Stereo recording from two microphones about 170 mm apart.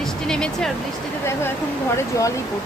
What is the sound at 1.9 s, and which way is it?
Speech, 20° left (ahead or behind).